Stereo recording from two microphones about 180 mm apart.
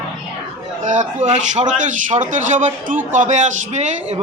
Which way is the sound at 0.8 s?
45° right (ahead or behind).